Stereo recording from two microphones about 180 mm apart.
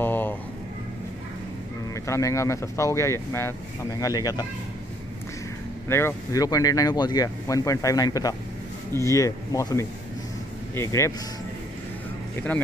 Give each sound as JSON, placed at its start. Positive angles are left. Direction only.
{"t": 0.0, "sound": "a sound", "side_deg": 10}
{"t": 2.0, "sound": "speech", "side_deg": 15}
{"t": 5.9, "sound": "speech", "side_deg": 15}
{"t": 12.4, "sound": "speech", "side_deg": 10}